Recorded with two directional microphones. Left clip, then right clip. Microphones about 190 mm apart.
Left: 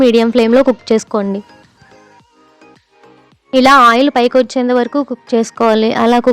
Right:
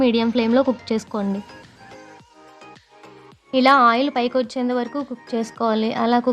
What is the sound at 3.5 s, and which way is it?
Speech, 40° left (ahead or behind).